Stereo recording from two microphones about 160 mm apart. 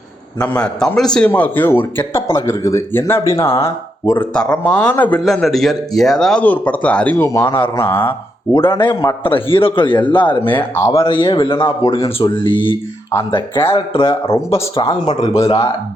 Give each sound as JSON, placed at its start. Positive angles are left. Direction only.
{"t": 0.4, "sound": "speech", "side_deg": 5}
{"t": 8.7, "sound": "speech", "side_deg": 30}
{"t": 14.3, "sound": "speech", "side_deg": 15}
{"t": 14.8, "sound": "speech", "side_deg": 30}